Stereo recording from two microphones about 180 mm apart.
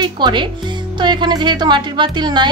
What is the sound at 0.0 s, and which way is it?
Speech, 25° right (ahead or behind).